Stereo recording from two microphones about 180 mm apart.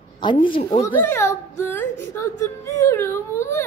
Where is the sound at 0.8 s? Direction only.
10° left (ahead or behind).